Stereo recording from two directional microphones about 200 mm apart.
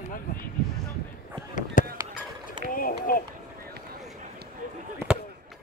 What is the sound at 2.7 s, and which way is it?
Run, 45° left (ahead or behind).